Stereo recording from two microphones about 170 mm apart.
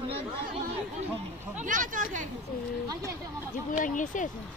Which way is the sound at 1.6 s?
50° right (ahead or behind).